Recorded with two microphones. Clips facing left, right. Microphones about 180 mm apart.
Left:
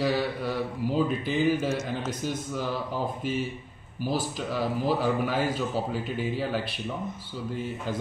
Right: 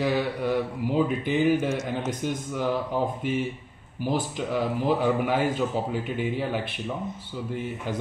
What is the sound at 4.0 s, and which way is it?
A man's voice, 20° right (ahead or behind).